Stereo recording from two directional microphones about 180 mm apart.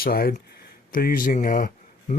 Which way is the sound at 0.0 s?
55° left (ahead or behind).